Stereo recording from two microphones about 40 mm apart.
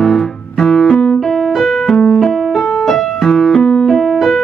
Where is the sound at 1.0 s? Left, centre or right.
Centre.